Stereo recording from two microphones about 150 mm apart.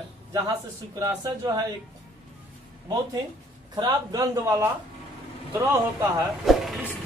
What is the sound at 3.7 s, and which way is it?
Speech, 25° right (ahead or behind).